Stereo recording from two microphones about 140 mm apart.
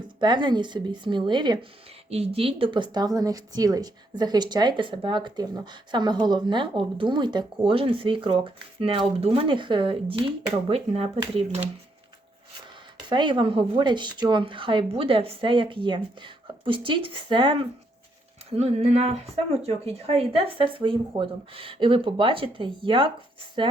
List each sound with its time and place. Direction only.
0.2 s a woman's voice: 35° right (ahead or behind)
2.0 s a woman's voice: 45° right (ahead or behind)
13.1 s a woman's voice: 35° right (ahead or behind)
18.5 s a woman's voice: 50° right (ahead or behind)